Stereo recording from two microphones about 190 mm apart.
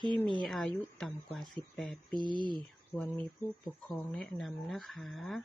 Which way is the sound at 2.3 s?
25° right (ahead or behind).